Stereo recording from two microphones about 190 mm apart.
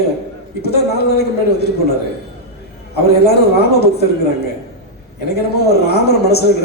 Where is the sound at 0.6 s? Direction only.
55° left (ahead or behind).